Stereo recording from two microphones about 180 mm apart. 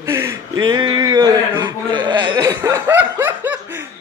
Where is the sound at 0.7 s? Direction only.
25° right (ahead or behind).